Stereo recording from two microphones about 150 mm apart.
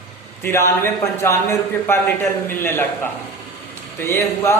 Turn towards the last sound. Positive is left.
turn(degrees=15)  # may be behind; listen again after turning